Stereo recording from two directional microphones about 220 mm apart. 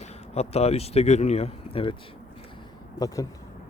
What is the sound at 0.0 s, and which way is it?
Speech, 30° left (ahead or behind).